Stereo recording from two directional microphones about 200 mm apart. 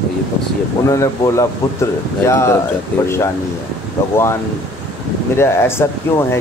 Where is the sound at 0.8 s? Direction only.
15° left (ahead or behind).